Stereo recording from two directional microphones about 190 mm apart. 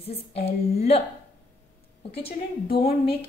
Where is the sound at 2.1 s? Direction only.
30° left (ahead or behind).